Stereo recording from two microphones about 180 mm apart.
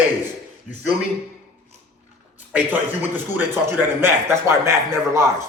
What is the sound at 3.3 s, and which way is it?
A man's voice, 15° right (ahead or behind).